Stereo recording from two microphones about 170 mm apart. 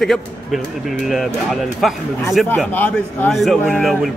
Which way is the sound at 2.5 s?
10° left (ahead or behind).